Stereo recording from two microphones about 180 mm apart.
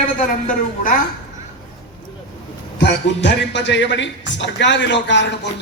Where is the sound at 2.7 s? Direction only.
75° left (ahead or behind).